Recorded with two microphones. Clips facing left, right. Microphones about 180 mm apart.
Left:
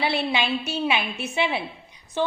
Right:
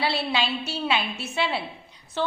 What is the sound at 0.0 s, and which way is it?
A woman's voice, 20° left (ahead or behind).